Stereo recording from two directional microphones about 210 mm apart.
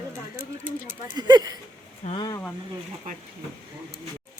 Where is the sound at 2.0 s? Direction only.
25° left (ahead or behind).